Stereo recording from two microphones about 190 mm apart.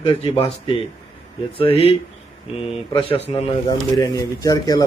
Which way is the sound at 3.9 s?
20° left (ahead or behind).